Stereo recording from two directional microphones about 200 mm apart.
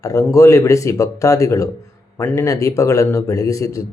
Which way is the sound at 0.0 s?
15° left (ahead or behind).